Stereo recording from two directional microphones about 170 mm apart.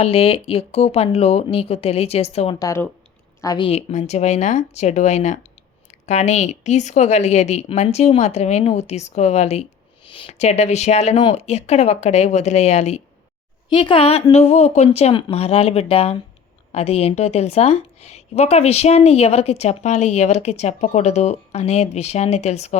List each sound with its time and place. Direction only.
0.0 s a woman's voice: 35° left (ahead or behind)
2.6 s speech: 15° left (ahead or behind)
3.7 s a woman's voice: 40° left (ahead or behind)
13.7 s a woman's voice: 30° left (ahead or behind)